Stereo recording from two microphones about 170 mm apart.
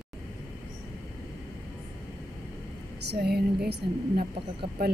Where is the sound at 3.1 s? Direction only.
65° right (ahead or behind).